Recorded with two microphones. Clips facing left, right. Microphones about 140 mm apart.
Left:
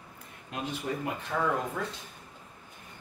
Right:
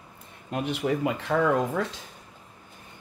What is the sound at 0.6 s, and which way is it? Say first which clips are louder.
Speech: right 7 dB; 85° right.